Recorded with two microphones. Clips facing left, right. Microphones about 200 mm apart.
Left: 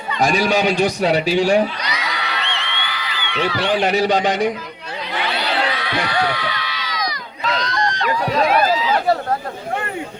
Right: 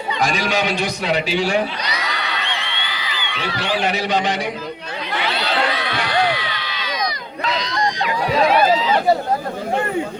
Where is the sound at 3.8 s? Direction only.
40° left (ahead or behind).